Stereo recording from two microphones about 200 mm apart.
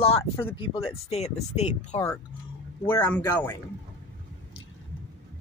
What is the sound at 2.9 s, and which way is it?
Speech, 20° left (ahead or behind).